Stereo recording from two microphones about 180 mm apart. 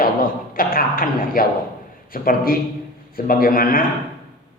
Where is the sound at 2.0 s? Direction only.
55° left (ahead or behind).